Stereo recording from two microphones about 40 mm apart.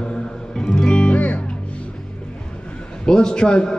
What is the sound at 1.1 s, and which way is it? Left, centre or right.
Music, left.